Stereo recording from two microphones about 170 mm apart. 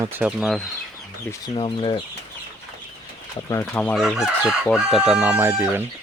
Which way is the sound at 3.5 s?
10° left (ahead or behind).